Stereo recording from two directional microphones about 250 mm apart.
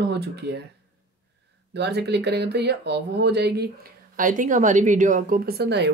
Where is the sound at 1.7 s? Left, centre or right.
Right.